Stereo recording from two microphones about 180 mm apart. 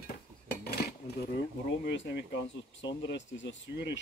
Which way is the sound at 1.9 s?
70° left (ahead or behind).